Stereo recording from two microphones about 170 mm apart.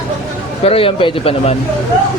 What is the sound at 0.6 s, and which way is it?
Speech, 35° left (ahead or behind).